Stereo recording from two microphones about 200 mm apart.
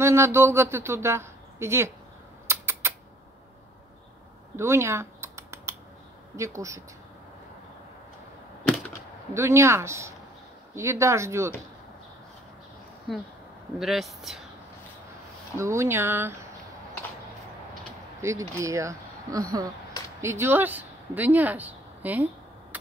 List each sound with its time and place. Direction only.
0.0 s speech: 15° right (ahead or behind)
2.4 s a sound: 15° right (ahead or behind)
4.6 s typing: 15° right (ahead or behind)
6.3 s speech: 15° right (ahead or behind)
9.3 s speech: 15° right (ahead or behind)
13.1 s speech: centre (ahead or behind)
15.5 s speech: 15° right (ahead or behind)
18.5 s speech: 15° right (ahead or behind)